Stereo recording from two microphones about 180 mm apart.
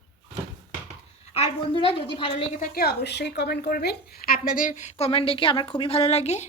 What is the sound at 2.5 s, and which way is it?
Speech, 50° left (ahead or behind).